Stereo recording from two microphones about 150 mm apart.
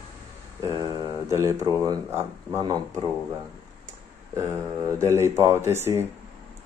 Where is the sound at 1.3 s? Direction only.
20° right (ahead or behind).